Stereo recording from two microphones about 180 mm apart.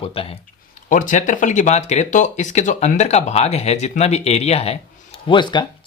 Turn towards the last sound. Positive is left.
turn(degrees=25)  # may be behind; listen again after turning